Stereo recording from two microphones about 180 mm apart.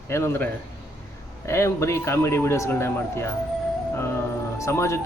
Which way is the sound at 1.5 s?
15° left (ahead or behind).